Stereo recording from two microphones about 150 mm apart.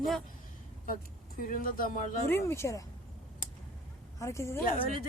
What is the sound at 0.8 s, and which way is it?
Speech, 70° left (ahead or behind).